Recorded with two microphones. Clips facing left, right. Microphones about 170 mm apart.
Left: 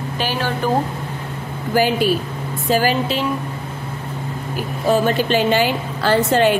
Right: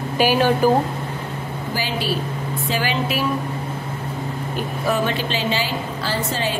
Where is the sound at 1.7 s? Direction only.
50° left (ahead or behind).